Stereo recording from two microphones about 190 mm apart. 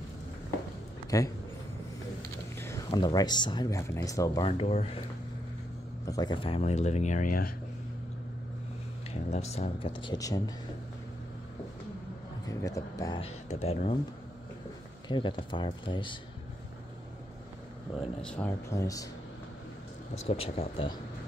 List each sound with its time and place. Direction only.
1.1 s speech: 20° left (ahead or behind)
2.5 s a sound: 15° left (ahead or behind)
2.9 s speech: 25° left (ahead or behind)
4.5 s speech: 30° left (ahead or behind)
6.0 s speech: 20° left (ahead or behind); by 7.5 s 45° left (ahead or behind)
9.1 s speech: 35° left (ahead or behind)
12.4 s speech: 15° left (ahead or behind)
13.2 s speech: 35° left (ahead or behind)
15.0 s speech: 25° left (ahead or behind)
18.2 s speech: 5° left (ahead or behind)
20.2 s speech: 30° left (ahead or behind)